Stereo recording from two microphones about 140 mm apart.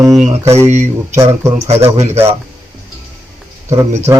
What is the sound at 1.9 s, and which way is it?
Speech, 50° right (ahead or behind).